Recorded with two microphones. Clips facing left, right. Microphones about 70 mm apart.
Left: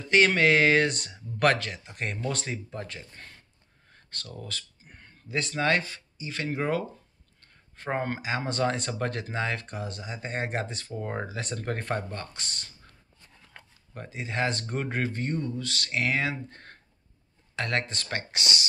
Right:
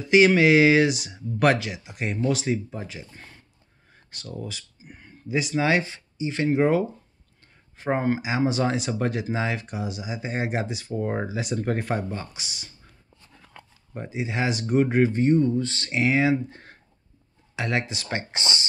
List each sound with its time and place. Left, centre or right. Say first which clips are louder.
0.1 s speech: right 5 dB; centre
13.9 s speech: right 3 dB; centre